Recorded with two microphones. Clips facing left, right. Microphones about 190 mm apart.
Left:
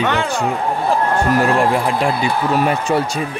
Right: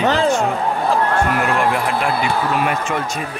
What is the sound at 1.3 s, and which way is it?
Speech, 35° left (ahead or behind).